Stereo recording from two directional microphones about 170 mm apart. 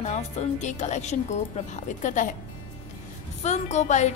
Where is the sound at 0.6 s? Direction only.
45° left (ahead or behind).